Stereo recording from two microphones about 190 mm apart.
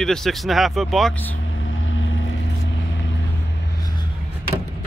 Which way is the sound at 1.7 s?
90° left.